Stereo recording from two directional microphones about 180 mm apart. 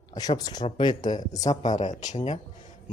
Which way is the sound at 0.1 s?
20° left (ahead or behind).